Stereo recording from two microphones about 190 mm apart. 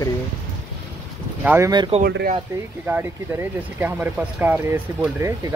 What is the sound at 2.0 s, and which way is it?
Speech, 55° right (ahead or behind).